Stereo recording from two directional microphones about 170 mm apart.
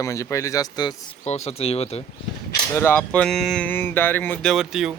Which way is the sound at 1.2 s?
40° left (ahead or behind).